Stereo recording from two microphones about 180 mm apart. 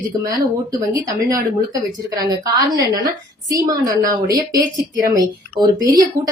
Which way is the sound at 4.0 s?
20° right (ahead or behind).